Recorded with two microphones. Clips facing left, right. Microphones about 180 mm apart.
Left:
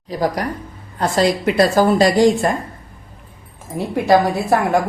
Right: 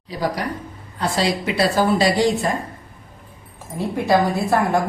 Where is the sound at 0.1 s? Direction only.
45° left (ahead or behind).